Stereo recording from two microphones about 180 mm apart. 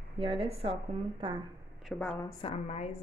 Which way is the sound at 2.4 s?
40° left (ahead or behind).